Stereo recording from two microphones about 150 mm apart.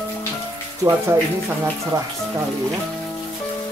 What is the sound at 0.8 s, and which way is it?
Speech, 20° right (ahead or behind).